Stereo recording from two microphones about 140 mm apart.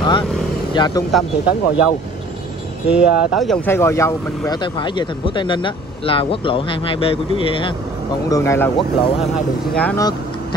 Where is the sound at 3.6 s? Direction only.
15° left (ahead or behind).